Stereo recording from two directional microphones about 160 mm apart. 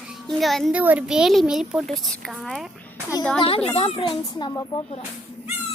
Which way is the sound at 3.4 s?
35° left (ahead or behind).